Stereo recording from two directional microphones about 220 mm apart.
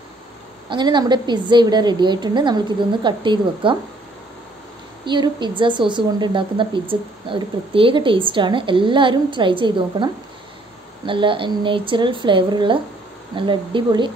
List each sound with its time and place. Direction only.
0.7 s a woman's voice: 20° right (ahead or behind)
5.0 s a woman's voice: 20° right (ahead or behind)
11.1 s a woman's voice: 20° right (ahead or behind)